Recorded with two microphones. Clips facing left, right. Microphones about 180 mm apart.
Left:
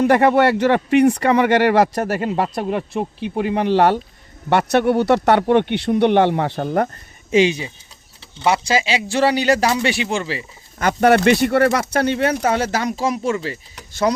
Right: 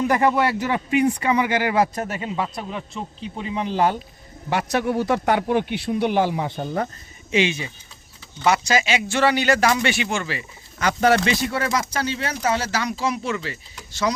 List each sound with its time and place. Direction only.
0.0 s speech: 70° left (ahead or behind)
7.3 s speech: 40° left (ahead or behind)
10.8 s speech: 55° left (ahead or behind); by 13.6 s 35° left (ahead or behind)